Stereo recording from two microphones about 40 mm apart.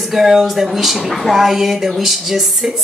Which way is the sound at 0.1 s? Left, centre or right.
Centre.